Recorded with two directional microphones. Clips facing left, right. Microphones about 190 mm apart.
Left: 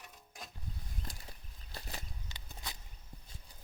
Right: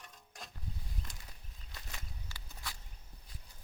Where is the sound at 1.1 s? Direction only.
35° left (ahead or behind).